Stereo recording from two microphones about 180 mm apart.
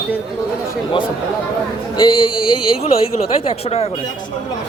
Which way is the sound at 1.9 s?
25° left (ahead or behind).